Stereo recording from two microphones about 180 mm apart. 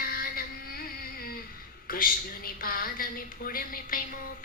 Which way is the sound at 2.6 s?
55° left (ahead or behind).